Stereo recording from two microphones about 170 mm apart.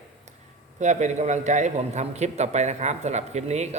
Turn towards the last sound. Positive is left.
turn(degrees=-40)  # may be behind; listen again after turning